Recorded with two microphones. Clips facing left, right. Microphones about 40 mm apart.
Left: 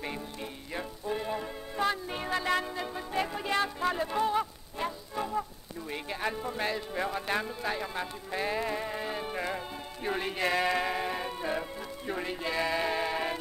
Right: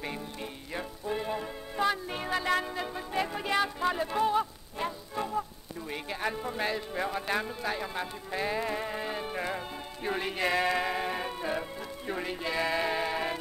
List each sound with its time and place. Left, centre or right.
0.0 s music: centre